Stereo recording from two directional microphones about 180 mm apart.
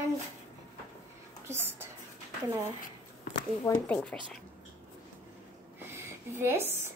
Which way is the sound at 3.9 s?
5° left (ahead or behind).